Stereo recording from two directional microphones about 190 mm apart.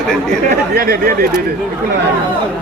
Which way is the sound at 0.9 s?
50° right (ahead or behind).